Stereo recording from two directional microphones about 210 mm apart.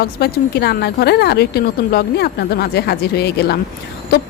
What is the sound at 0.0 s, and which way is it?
Speech, 50° left (ahead or behind).